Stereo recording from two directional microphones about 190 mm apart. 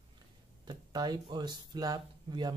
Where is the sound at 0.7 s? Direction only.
20° right (ahead or behind).